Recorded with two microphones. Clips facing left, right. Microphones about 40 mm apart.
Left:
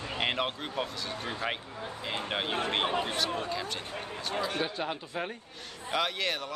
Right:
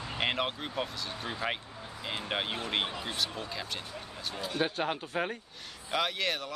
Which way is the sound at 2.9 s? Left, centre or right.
Left.